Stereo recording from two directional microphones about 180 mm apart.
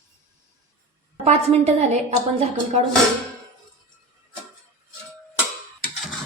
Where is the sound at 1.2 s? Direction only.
35° right (ahead or behind).